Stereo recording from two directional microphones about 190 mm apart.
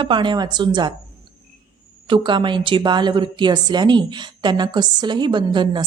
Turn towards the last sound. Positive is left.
turn(degrees=-25)  # may be behind; listen again after turning